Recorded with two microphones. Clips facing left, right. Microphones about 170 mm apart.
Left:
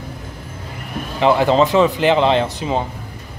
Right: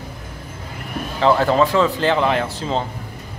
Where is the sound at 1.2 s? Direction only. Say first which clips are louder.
Left 2 dB; 15° left (ahead or behind).